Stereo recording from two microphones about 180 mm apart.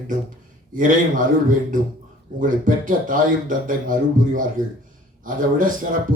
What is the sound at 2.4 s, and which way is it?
A man's voice, 45° right (ahead or behind).